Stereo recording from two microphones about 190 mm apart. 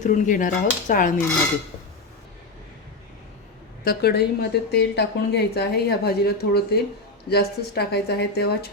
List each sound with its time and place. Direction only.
0.0 s speech: 45° left (ahead or behind)
3.8 s a woman's voice: 60° left (ahead or behind)